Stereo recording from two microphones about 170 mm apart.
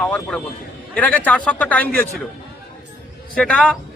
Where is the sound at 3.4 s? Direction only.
5° left (ahead or behind).